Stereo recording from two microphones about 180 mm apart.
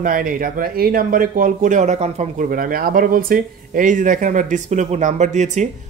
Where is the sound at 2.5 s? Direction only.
50° right (ahead or behind).